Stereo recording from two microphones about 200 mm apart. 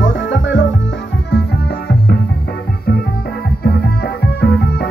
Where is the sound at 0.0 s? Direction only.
70° left (ahead or behind).